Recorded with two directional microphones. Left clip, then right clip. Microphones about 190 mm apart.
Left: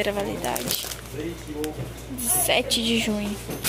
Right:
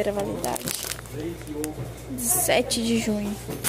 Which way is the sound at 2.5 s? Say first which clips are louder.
Left 1 dB; 25° right (ahead or behind).